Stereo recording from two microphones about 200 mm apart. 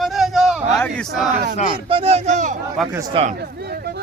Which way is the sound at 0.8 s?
5° left (ahead or behind).